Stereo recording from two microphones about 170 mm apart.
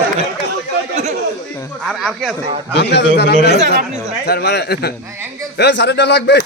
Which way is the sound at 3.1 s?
75° left (ahead or behind).